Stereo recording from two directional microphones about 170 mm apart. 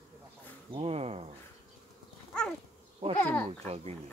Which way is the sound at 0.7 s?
35° right (ahead or behind).